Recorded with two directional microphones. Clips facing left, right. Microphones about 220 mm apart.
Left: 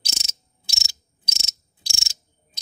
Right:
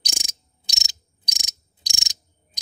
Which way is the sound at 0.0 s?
15° right (ahead or behind).